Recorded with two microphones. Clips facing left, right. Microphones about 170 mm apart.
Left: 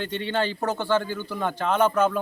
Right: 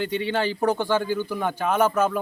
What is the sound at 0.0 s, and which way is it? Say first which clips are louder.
A man's voice: right 2 dB; 10° right (ahead or behind).